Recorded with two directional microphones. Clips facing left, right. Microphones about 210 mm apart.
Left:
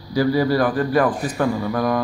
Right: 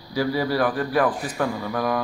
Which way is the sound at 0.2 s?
5° right (ahead or behind).